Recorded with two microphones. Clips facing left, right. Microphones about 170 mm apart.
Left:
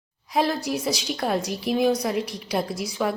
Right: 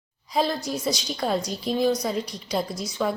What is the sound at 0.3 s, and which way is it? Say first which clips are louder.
A woman's voice: left 2 dB; 5° left (ahead or behind).